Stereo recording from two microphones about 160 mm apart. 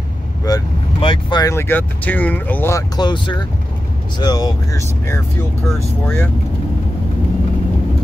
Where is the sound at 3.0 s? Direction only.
30° left (ahead or behind); by 6.3 s 10° left (ahead or behind).